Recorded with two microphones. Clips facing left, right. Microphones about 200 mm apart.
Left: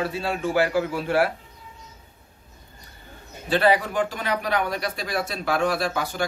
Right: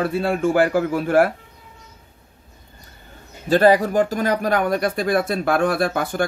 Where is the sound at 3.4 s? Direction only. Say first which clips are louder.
Right 6 dB; 45° right (ahead or behind).